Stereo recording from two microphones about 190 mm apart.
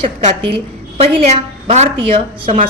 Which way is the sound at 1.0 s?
35° right (ahead or behind).